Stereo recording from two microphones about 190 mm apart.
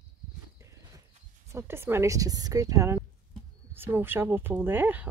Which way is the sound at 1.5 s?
10° right (ahead or behind).